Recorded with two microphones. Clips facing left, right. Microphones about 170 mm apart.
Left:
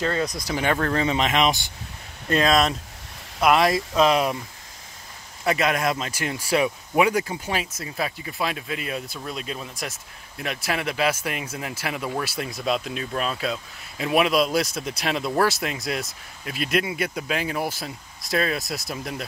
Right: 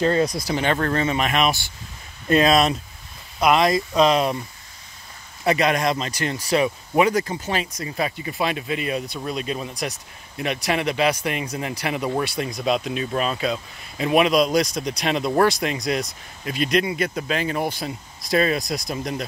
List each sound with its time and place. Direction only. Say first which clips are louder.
0.0 s speech: right 5 dB; 20° right (ahead or behind)
0.9 s speech: even; 15° left (ahead or behind)
2.2 s speech: right 4 dB; 15° right (ahead or behind)
3.3 s speech: right 1 dB; 5° left (ahead or behind)
5.4 s speech: right 3 dB; centre (ahead or behind)